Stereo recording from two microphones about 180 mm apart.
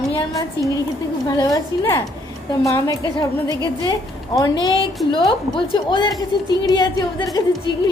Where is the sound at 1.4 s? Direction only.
20° left (ahead or behind).